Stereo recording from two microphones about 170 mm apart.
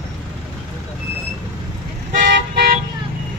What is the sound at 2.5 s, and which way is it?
Vehicle, 65° right (ahead or behind).